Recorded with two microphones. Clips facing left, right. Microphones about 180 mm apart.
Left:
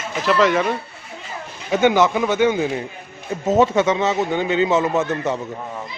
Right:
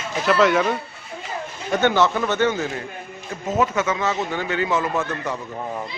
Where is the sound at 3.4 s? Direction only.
30° left (ahead or behind).